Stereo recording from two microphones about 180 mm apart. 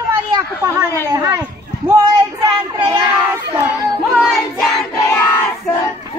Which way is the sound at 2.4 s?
15° right (ahead or behind).